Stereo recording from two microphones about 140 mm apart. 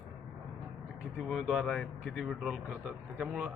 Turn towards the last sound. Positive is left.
turn(degrees=-10)  # may be behind; listen again after turning